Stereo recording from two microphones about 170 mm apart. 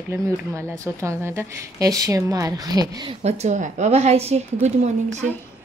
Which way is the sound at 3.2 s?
45° right (ahead or behind).